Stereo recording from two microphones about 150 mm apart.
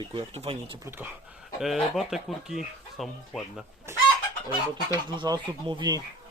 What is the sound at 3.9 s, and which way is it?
Speech, 15° right (ahead or behind).